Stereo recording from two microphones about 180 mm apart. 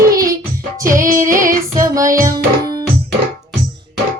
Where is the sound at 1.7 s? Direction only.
15° right (ahead or behind).